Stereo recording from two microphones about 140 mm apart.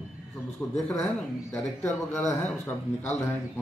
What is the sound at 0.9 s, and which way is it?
Speech, 5° left (ahead or behind).